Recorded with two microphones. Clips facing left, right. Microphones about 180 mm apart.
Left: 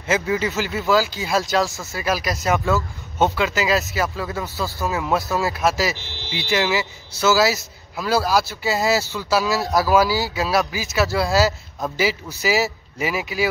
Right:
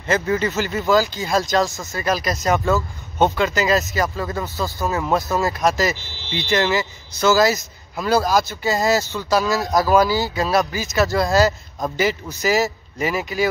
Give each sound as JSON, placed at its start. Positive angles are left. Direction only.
{"t": 0.0, "sound": "speech", "side_deg": 5}
{"t": 4.6, "sound": "speech", "side_deg": -15}
{"t": 4.8, "sound": "speech", "side_deg": 0}